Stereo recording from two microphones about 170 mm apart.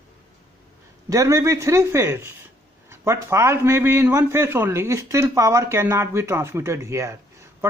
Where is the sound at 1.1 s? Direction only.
20° right (ahead or behind).